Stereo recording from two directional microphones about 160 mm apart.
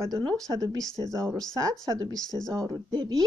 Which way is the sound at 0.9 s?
20° right (ahead or behind).